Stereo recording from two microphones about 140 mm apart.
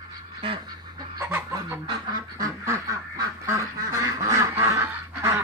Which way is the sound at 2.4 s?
20° right (ahead or behind).